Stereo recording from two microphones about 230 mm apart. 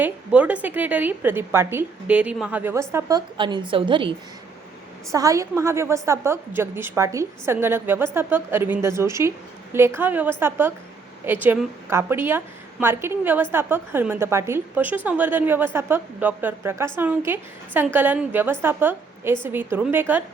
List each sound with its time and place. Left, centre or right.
0.0 s a woman's voice: centre; by 4.1 s right
5.1 s a woman's voice: centre